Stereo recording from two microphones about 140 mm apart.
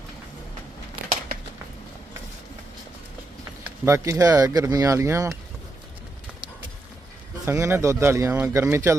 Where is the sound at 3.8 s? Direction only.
20° right (ahead or behind).